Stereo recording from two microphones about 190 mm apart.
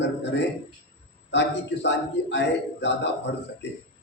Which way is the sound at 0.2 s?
65° left (ahead or behind).